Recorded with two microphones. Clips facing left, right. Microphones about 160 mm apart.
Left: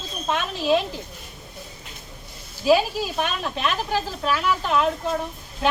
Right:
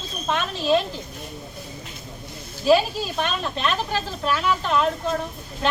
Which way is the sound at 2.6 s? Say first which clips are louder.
Right 1 dB; 10° left (ahead or behind).